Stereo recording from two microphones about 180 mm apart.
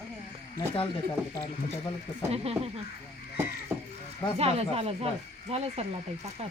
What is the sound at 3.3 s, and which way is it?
Speech, 10° right (ahead or behind).